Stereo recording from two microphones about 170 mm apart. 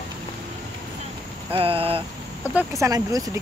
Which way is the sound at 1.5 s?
35° right (ahead or behind).